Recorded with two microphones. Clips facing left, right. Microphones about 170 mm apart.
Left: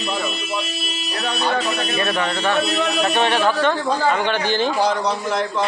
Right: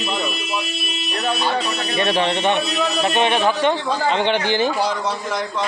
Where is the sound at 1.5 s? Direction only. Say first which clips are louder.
Even; 30° right (ahead or behind).